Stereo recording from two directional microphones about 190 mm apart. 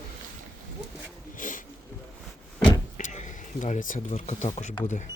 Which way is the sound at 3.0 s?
40° left (ahead or behind).